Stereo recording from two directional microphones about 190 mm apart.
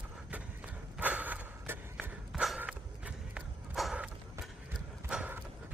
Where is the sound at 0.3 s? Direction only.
10° right (ahead or behind).